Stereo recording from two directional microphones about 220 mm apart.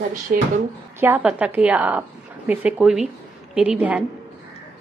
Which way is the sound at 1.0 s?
10° right (ahead or behind).